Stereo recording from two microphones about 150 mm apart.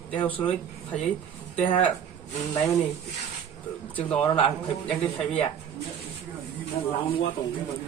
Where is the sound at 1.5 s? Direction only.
35° left (ahead or behind).